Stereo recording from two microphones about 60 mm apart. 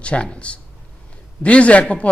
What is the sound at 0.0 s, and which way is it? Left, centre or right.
Speech, centre.